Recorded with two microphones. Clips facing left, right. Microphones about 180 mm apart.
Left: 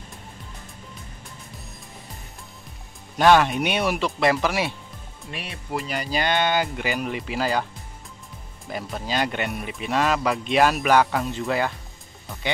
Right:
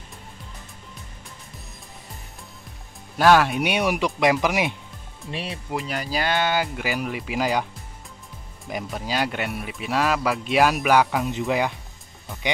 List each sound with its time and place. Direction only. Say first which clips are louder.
3.2 s speech: even; 5° right (ahead or behind)
5.3 s speech: right 5 dB; 30° right (ahead or behind)
5.7 s speech: left 2 dB; centre (ahead or behind)
8.6 s speech: right 1 dB; 10° right (ahead or behind)